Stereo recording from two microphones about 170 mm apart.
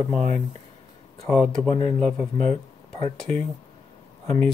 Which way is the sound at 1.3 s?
5° left (ahead or behind).